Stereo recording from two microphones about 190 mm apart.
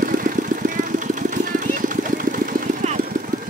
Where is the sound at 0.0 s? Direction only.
45° right (ahead or behind).